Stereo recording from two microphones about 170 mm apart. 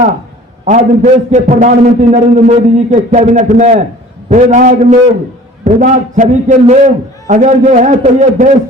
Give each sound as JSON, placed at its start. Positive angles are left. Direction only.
{"t": 0.6, "sound": "a man's voice", "side_deg": -45}